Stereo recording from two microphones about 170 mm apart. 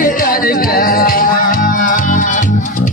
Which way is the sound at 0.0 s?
55° left (ahead or behind).